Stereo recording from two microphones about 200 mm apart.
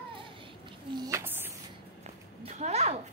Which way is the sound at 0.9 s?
15° right (ahead or behind).